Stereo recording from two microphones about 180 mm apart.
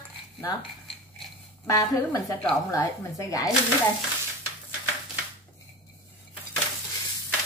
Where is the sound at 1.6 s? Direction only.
20° left (ahead or behind).